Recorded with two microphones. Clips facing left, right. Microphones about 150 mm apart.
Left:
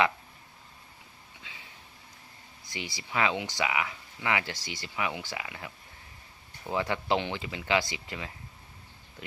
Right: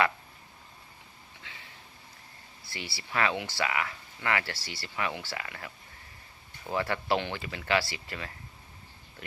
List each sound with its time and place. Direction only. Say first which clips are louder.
2.6 s speech: left 2 dB; 15° left (ahead or behind)